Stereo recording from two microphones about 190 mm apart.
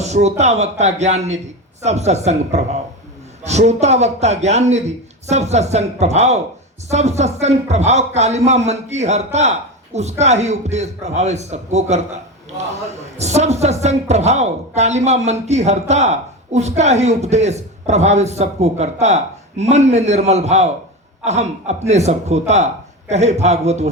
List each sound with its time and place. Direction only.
0.0 s speech: 35° right (ahead or behind)